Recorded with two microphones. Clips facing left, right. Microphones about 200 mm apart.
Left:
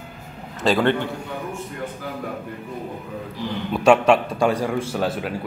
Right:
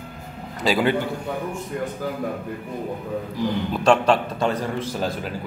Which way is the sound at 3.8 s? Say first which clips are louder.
Left 3 dB; 10° left (ahead or behind).